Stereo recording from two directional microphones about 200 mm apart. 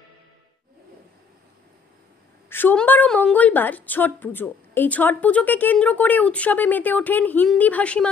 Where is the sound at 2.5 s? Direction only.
10° left (ahead or behind).